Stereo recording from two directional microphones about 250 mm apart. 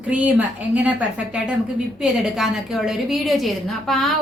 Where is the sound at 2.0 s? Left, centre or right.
Centre.